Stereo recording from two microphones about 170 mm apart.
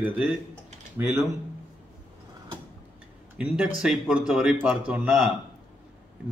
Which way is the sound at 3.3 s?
5° right (ahead or behind).